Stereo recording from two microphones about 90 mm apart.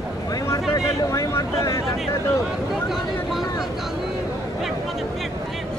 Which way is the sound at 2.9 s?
5° right (ahead or behind).